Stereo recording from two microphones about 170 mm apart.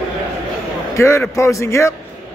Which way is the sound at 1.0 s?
15° left (ahead or behind).